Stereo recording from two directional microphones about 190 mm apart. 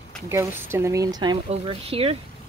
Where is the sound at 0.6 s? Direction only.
15° right (ahead or behind); by 2.1 s 30° right (ahead or behind).